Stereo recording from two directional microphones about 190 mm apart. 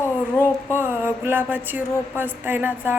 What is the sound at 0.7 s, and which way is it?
A woman's voice, 10° right (ahead or behind).